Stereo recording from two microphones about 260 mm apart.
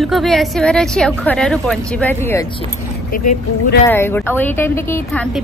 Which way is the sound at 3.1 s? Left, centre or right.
Left.